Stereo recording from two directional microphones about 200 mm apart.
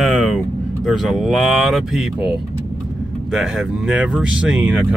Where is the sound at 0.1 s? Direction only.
5° right (ahead or behind).